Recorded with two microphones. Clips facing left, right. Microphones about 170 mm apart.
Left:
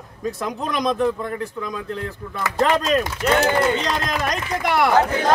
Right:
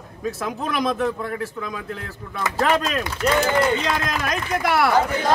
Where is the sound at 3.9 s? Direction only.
5° right (ahead or behind).